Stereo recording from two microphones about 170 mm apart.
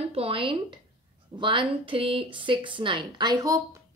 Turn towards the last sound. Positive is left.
turn(degrees=-20)  # may be behind; listen again after turning